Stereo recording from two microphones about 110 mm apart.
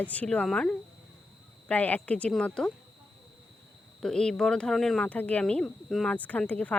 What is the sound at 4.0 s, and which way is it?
Speech, 5° left (ahead or behind).